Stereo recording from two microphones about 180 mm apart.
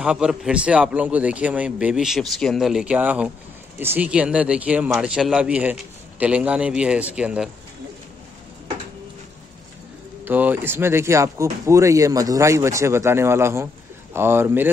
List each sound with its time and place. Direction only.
0.0 s a man's voice: 5° right (ahead or behind)
10.2 s speech: 10° right (ahead or behind)